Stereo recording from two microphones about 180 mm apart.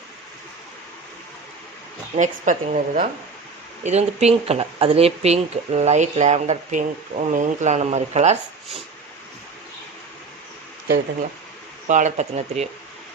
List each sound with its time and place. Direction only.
2.1 s a woman's voice: 45° right (ahead or behind)
11.9 s speech: 40° right (ahead or behind)